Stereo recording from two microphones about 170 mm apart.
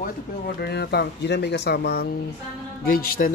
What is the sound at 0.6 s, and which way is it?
Speech, 70° left (ahead or behind).